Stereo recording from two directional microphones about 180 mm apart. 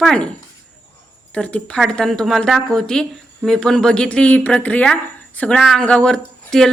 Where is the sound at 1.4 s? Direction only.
5° left (ahead or behind).